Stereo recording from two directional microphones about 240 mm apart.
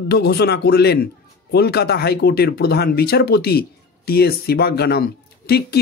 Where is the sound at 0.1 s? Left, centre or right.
Left.